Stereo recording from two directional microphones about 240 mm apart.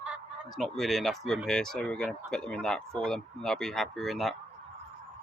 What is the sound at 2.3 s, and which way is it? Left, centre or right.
Speech, centre.